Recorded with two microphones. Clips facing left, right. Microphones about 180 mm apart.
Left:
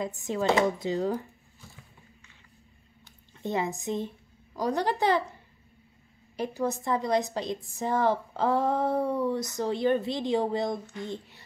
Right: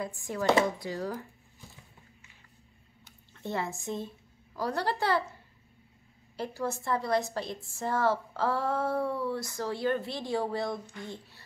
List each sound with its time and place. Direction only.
0.0 s a woman's voice: 20° left (ahead or behind)
3.3 s speech: 15° left (ahead or behind)
6.3 s a woman's voice: 15° left (ahead or behind)